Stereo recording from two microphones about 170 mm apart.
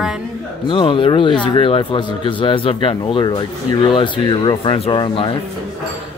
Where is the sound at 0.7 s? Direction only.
30° left (ahead or behind).